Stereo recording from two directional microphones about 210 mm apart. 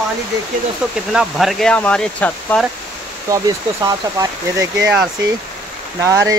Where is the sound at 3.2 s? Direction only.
15° right (ahead or behind).